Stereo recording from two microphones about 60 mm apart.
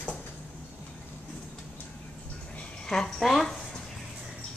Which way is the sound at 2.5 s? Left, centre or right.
Centre.